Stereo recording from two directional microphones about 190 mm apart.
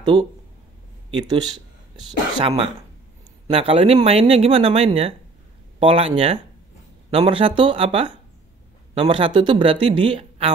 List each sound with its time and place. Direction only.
0.0 s speech: 25° right (ahead or behind)